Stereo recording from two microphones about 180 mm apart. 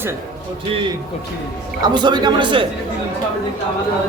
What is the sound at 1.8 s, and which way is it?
Speech, 25° right (ahead or behind).